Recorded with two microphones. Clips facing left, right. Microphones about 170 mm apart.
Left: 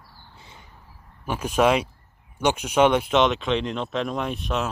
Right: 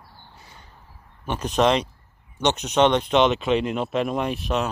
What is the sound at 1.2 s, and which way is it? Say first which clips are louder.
Speech: even; 5° left (ahead or behind).